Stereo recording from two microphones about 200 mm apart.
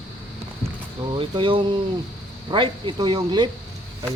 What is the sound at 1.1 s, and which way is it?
Speech, 25° right (ahead or behind).